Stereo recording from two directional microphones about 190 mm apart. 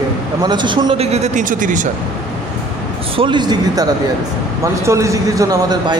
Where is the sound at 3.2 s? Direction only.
25° right (ahead or behind).